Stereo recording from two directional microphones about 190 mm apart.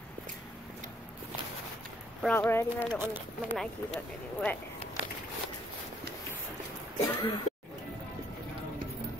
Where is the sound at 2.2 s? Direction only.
10° left (ahead or behind).